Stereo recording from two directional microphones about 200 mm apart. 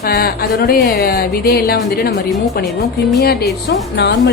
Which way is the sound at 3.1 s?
55° left (ahead or behind).